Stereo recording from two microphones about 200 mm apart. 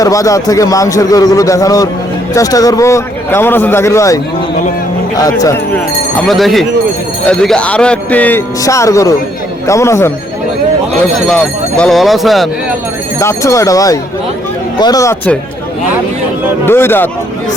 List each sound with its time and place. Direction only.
0.0 s speech: 15° left (ahead or behind)
6.2 s speech: centre (ahead or behind)
11.3 s speech: 5° left (ahead or behind)
13.1 s speech: 15° left (ahead or behind)
16.6 s speech: 10° left (ahead or behind)